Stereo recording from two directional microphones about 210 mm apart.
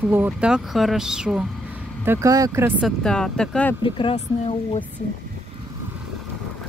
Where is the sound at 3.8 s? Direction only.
25° left (ahead or behind).